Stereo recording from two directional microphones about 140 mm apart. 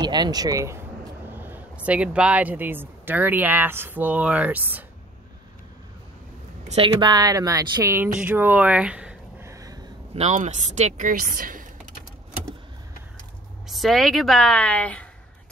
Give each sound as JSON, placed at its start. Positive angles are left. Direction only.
{"t": 0.0, "sound": "speech", "side_deg": -30}
{"t": 1.3, "sound": "a sound", "side_deg": -15}
{"t": 1.9, "sound": "speech", "side_deg": -10}
{"t": 6.7, "sound": "speech", "side_deg": -35}
{"t": 9.4, "sound": "a sound", "side_deg": -20}
{"t": 10.1, "sound": "a woman's voice", "side_deg": -55}
{"t": 13.7, "sound": "a woman's voice", "side_deg": 0}